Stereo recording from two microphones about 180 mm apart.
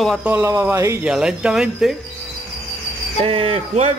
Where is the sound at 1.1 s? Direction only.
5° right (ahead or behind).